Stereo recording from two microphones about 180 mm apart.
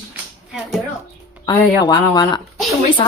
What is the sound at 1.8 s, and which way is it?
Speech, 20° left (ahead or behind).